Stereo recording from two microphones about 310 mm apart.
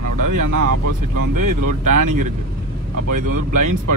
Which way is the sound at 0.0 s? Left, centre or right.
Right.